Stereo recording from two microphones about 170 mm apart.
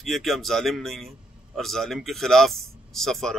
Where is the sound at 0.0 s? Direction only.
Centre (ahead or behind).